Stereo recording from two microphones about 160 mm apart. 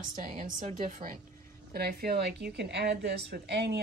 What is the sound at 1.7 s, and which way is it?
A woman's voice, 80° right.